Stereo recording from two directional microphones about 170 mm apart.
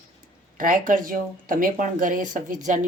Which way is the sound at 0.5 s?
55° right (ahead or behind).